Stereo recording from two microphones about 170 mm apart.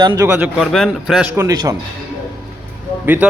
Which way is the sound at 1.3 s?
20° right (ahead or behind).